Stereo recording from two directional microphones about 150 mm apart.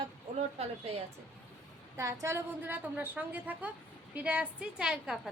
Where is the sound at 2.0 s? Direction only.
20° right (ahead or behind).